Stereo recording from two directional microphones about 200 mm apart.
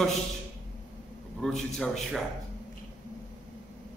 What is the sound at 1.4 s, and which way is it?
Speech, centre (ahead or behind).